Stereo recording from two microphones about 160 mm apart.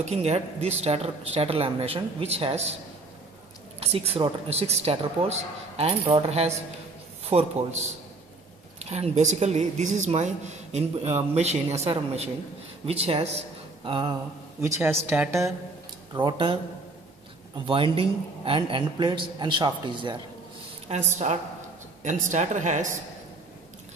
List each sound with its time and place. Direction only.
0.0 s a woman's voice: 40° right (ahead or behind)
3.8 s a woman's voice: 40° right (ahead or behind)
13.8 s a woman's voice: 30° right (ahead or behind)
14.6 s a woman's voice: 15° right (ahead or behind)
16.1 s a woman's voice: 30° right (ahead or behind)
17.6 s a woman's voice: 35° right (ahead or behind)
20.9 s a woman's voice: 45° right (ahead or behind)